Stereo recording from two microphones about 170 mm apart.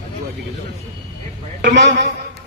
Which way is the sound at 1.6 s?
90° right.